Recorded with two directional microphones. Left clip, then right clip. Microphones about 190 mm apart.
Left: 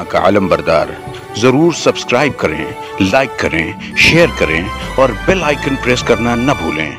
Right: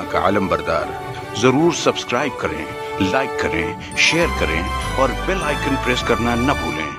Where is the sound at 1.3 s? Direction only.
20° left (ahead or behind).